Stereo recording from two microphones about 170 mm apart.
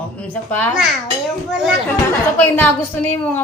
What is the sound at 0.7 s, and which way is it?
A child's voice, 5° right (ahead or behind).